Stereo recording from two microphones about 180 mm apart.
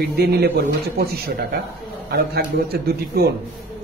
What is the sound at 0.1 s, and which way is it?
Speech, 65° right (ahead or behind).